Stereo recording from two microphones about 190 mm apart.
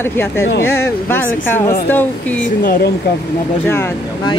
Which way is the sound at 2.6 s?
50° left (ahead or behind).